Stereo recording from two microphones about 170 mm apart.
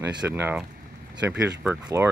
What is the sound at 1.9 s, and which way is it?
Speech, 15° right (ahead or behind).